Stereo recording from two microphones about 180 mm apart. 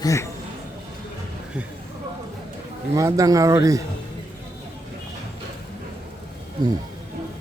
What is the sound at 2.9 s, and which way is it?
Speech, 20° right (ahead or behind).